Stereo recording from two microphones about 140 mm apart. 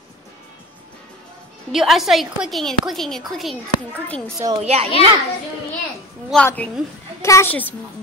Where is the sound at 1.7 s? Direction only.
Centre (ahead or behind).